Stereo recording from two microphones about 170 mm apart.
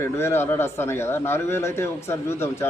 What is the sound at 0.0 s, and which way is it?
Speech, 15° left (ahead or behind).